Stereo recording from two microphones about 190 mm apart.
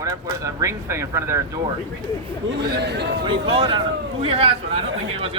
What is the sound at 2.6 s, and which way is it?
Speech, 60° right (ahead or behind).